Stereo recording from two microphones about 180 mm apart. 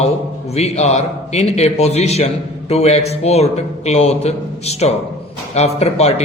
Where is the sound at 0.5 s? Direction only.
35° left (ahead or behind).